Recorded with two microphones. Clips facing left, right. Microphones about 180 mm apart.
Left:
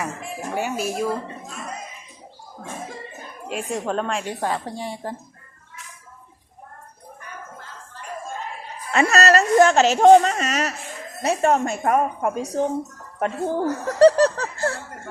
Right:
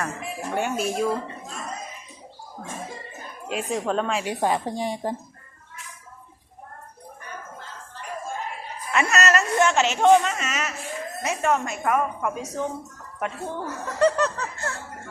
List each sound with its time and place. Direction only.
0.2 s speech: 5° left (ahead or behind)
3.5 s speech: centre (ahead or behind)
4.3 s a woman's voice: 15° right (ahead or behind)
8.9 s a woman's voice: 35° left (ahead or behind)